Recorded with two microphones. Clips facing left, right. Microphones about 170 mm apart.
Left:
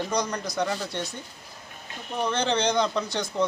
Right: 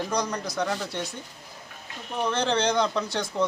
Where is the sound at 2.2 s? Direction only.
5° right (ahead or behind).